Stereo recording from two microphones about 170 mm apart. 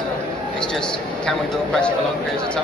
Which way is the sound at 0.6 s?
5° left (ahead or behind).